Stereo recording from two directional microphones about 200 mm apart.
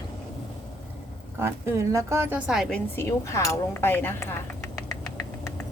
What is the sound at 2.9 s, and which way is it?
Speech, 15° left (ahead or behind).